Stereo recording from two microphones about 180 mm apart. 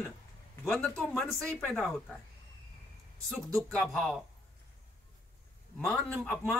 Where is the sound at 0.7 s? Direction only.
5° left (ahead or behind).